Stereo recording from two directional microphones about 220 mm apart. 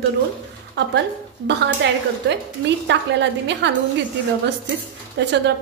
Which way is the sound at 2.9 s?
55° right (ahead or behind).